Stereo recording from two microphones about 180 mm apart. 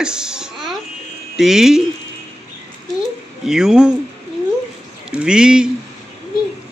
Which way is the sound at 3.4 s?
5° right (ahead or behind).